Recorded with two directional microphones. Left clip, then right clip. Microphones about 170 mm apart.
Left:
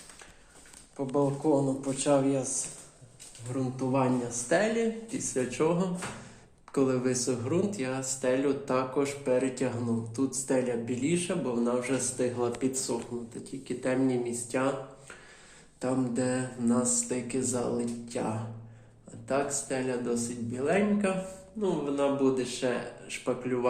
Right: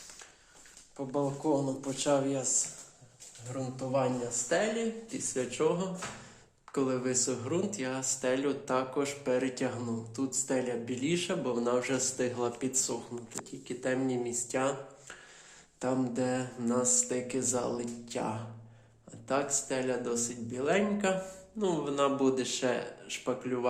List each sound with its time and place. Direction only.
0.9 s speech: 5° right (ahead or behind)
3.5 s speech: 5° right (ahead or behind); by 22.8 s 25° right (ahead or behind)
23.0 s speech: 15° right (ahead or behind)